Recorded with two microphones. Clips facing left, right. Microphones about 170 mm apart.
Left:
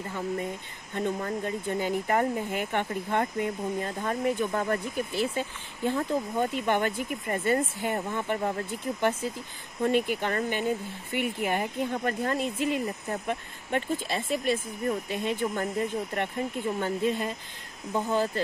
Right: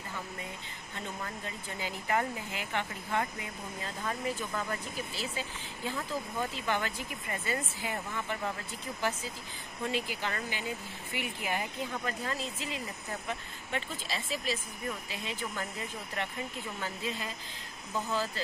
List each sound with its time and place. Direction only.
0.9 s speech: 50° left (ahead or behind)